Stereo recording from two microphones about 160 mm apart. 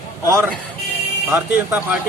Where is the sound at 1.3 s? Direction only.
15° right (ahead or behind).